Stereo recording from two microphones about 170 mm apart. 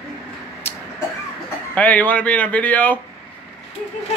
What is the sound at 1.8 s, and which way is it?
A man's voice, 10° left (ahead or behind).